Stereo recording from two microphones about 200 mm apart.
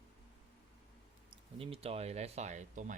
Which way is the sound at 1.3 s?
30° right (ahead or behind).